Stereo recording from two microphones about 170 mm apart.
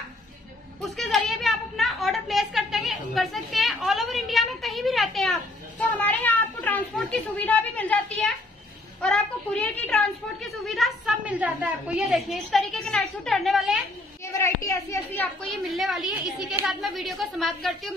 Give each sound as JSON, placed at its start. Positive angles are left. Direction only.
{"t": 0.7, "sound": "a woman's voice", "side_deg": 0}
{"t": 14.2, "sound": "a child's voice", "side_deg": 15}
{"t": 15.4, "sound": "a woman's voice", "side_deg": 0}